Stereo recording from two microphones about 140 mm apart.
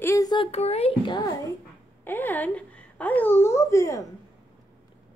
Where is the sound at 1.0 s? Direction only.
30° left (ahead or behind).